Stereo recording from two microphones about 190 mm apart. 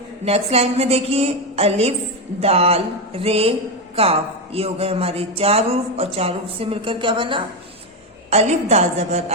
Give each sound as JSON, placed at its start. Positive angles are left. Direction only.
{"t": 0.3, "sound": "speech", "side_deg": -30}